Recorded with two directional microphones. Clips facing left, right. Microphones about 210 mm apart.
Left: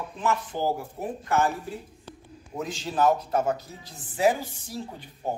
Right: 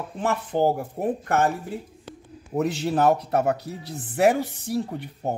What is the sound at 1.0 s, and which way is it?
Speech, 50° right (ahead or behind).